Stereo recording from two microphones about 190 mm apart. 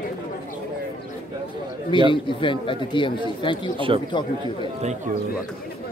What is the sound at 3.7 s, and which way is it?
A man's voice, 25° right (ahead or behind).